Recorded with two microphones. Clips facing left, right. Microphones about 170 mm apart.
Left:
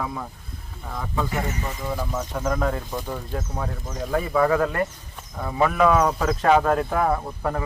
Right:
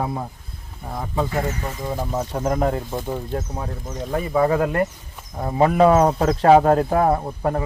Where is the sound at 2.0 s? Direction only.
30° right (ahead or behind).